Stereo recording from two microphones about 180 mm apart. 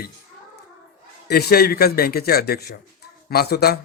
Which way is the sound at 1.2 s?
60° left (ahead or behind).